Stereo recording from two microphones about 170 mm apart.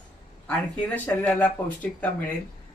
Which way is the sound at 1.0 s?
10° left (ahead or behind).